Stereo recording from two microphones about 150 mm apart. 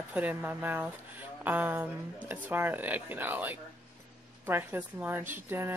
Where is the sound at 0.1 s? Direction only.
10° right (ahead or behind).